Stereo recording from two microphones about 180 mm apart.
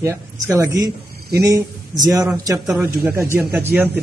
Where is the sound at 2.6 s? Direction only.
5° right (ahead or behind).